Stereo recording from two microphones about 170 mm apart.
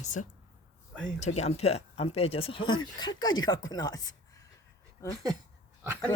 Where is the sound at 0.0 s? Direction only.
45° left (ahead or behind); by 5.2 s 20° left (ahead or behind).